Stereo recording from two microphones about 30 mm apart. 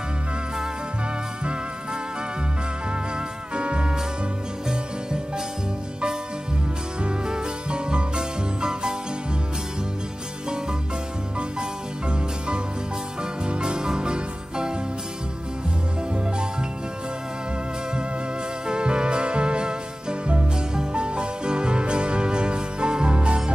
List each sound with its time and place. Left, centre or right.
3.5 s music: right
7.2 s music: right
12.1 s music: right
18.7 s music: right